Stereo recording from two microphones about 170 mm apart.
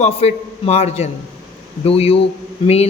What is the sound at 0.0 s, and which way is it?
Speech, 40° left (ahead or behind).